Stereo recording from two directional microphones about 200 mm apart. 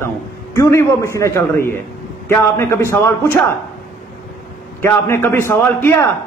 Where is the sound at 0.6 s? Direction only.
15° left (ahead or behind).